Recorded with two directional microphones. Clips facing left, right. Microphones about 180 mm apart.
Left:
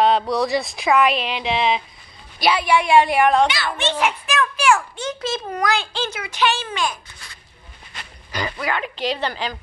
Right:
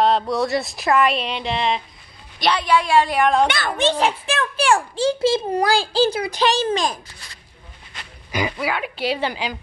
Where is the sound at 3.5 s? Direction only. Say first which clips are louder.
Right 2 dB; 50° right (ahead or behind).